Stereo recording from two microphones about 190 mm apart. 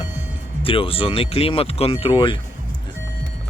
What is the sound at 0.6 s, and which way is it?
Speech, 30° left (ahead or behind).